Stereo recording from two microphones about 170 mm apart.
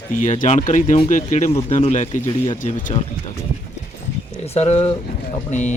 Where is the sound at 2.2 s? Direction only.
20° left (ahead or behind).